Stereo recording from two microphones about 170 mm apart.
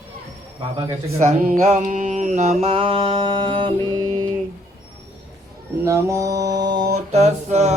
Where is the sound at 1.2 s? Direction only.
45° right (ahead or behind).